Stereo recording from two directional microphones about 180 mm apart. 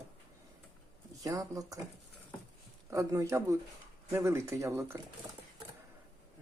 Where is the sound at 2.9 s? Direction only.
15° right (ahead or behind).